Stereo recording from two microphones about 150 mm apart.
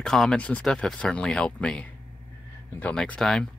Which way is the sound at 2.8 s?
5° left (ahead or behind).